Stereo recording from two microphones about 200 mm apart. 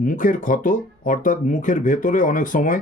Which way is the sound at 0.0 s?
40° left (ahead or behind).